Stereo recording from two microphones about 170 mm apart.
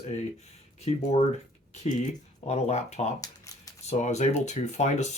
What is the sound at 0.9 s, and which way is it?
Speech, 40° left (ahead or behind).